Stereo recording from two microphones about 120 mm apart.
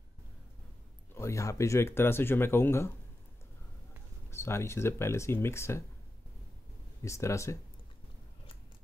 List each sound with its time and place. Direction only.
1.1 s speech: 25° left (ahead or behind)
4.3 s speech: 20° left (ahead or behind)
7.0 s speech: 25° left (ahead or behind)